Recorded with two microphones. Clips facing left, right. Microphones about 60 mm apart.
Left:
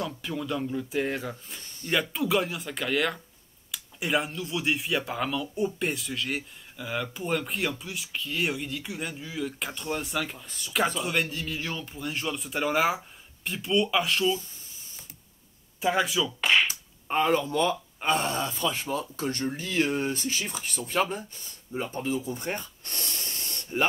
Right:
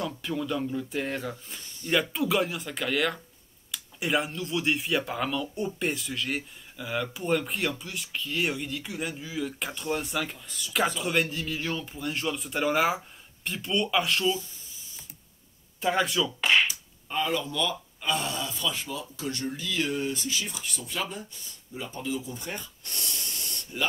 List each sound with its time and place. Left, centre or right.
0.1 s speech: centre
15.8 s speech: centre
17.1 s speech: left
23.7 s speech: left